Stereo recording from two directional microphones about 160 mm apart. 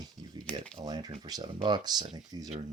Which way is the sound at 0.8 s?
25° right (ahead or behind).